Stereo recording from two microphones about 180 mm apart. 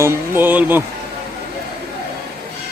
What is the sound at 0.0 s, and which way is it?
Speech, 15° right (ahead or behind).